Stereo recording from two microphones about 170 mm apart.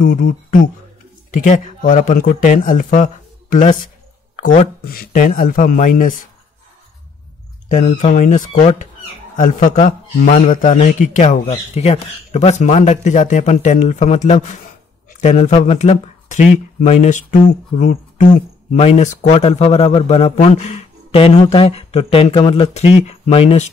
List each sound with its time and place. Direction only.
0.0 s speech: 55° left (ahead or behind)
7.6 s a man's voice: 45° left (ahead or behind)